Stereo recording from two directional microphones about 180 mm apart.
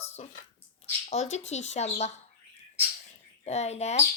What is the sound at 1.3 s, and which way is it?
Speech, 40° left (ahead or behind).